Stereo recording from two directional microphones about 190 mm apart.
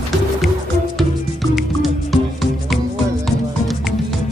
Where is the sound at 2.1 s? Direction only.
Centre (ahead or behind).